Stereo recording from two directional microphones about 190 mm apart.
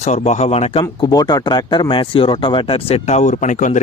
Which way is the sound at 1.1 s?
20° left (ahead or behind).